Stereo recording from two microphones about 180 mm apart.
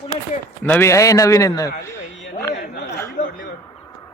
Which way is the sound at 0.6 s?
10° left (ahead or behind).